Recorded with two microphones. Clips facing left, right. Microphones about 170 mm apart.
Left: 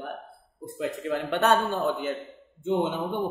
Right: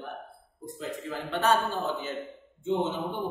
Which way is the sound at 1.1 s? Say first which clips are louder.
Left 3 dB; 65° left (ahead or behind).